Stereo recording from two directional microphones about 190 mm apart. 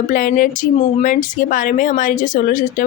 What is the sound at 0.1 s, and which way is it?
Speech, 45° left (ahead or behind).